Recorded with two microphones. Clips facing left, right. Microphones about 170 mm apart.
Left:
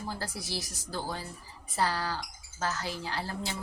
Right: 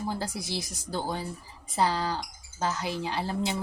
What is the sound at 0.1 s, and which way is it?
Speech, 20° right (ahead or behind).